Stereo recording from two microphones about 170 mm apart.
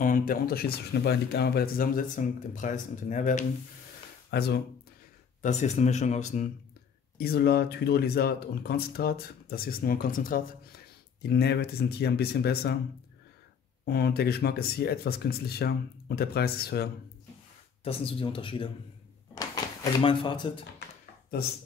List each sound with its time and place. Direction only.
0.0 s speech: 55° left (ahead or behind)
4.3 s speech: 70° left (ahead or behind)
5.4 s speech: 45° left (ahead or behind)
7.2 s speech: 65° left (ahead or behind)
11.2 s speech: 75° left (ahead or behind)
13.8 s speech: 65° left (ahead or behind)
17.8 s speech: 30° left (ahead or behind)